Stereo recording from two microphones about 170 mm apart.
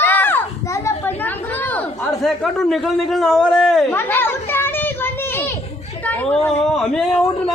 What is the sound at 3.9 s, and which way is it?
Children playing, 15° left (ahead or behind).